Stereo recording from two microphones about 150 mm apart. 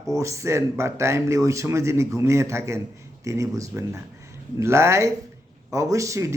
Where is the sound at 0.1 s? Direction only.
20° right (ahead or behind).